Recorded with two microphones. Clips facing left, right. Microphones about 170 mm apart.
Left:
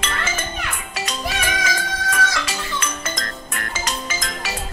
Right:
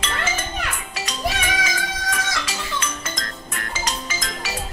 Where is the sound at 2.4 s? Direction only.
55° left (ahead or behind).